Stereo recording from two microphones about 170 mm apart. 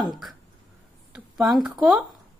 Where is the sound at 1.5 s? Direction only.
5° right (ahead or behind).